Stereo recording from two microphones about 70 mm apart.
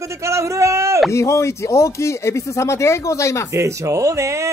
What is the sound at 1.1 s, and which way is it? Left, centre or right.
Speech, left.